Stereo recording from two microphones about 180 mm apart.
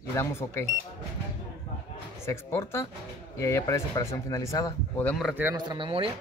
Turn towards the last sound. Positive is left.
turn(degrees=-30)  # may be behind; listen again after turning